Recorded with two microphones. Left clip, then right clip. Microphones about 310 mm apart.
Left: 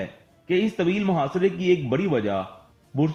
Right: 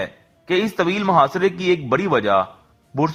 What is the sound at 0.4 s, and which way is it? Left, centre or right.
A man's voice, right.